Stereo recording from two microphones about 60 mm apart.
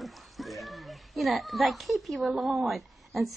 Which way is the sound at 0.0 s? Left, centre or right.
Centre.